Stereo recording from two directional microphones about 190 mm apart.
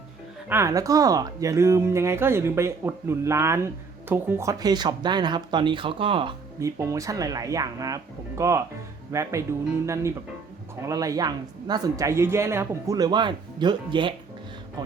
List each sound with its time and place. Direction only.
0.4 s speech: 15° right (ahead or behind)
6.6 s speech: 15° right (ahead or behind)